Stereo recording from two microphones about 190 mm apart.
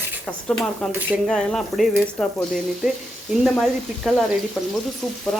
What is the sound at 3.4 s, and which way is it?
Sizzle, centre (ahead or behind).